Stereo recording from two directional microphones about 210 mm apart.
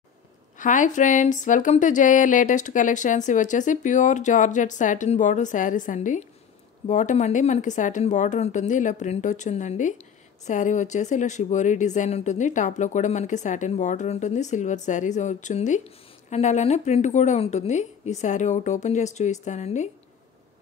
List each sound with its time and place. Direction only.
0.6 s speech: 35° left (ahead or behind)